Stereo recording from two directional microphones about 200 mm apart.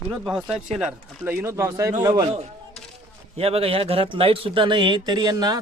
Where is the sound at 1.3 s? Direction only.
15° right (ahead or behind).